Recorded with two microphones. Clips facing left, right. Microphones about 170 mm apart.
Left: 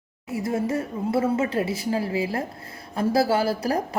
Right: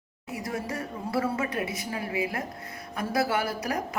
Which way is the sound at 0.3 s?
25° left (ahead or behind).